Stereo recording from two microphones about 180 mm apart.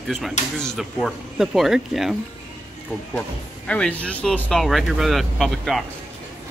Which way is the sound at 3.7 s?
5° left (ahead or behind).